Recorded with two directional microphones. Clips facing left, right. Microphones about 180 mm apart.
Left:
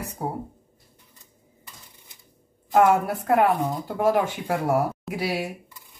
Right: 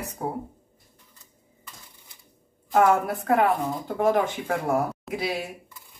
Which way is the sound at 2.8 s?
10° left (ahead or behind).